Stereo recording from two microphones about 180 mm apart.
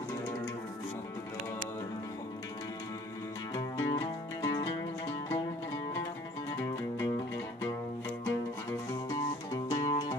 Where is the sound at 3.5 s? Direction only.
20° left (ahead or behind).